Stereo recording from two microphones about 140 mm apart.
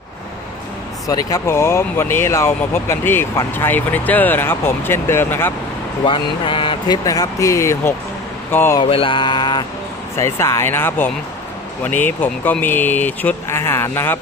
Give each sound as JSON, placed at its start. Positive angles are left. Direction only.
{"t": 1.0, "sound": "speech", "side_deg": 25}
{"t": 6.1, "sound": "speech", "side_deg": 35}
{"t": 8.8, "sound": "mantra", "side_deg": 40}
{"t": 10.2, "sound": "speech", "side_deg": 20}